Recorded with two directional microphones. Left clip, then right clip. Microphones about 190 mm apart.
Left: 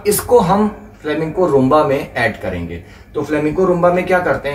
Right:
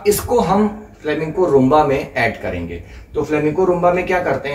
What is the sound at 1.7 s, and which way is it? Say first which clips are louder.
Speech: left 1 dB; 10° right (ahead or behind).